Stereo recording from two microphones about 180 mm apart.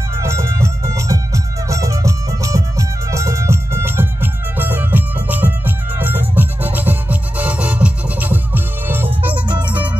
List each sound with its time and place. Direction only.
0.2 s music: 15° right (ahead or behind)